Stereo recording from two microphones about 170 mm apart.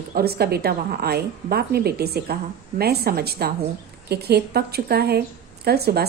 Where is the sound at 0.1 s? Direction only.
65° right (ahead or behind).